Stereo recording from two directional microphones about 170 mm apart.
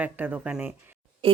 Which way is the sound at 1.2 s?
35° right (ahead or behind).